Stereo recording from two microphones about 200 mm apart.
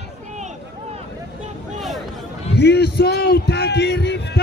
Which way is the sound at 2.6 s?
55° left (ahead or behind).